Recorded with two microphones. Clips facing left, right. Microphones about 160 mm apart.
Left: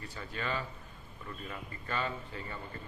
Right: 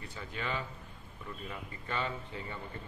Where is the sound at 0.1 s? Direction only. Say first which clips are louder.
Left 1 dB; 15° right (ahead or behind).